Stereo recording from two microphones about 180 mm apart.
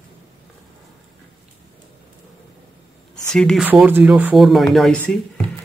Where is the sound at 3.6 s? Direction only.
10° right (ahead or behind).